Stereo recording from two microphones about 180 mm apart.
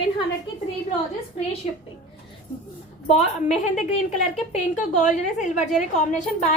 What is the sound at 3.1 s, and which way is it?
A woman's voice, 40° left (ahead or behind).